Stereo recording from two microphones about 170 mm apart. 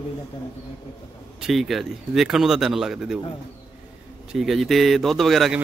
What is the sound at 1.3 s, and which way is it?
Speech, centre (ahead or behind).